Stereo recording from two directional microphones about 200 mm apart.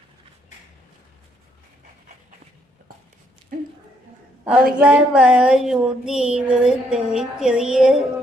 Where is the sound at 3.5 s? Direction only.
45° right (ahead or behind).